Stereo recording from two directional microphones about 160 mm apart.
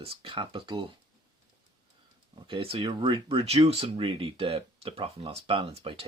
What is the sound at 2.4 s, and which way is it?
Speech, 30° right (ahead or behind).